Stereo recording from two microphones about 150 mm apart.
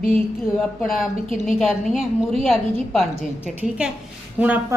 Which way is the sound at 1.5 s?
Centre (ahead or behind).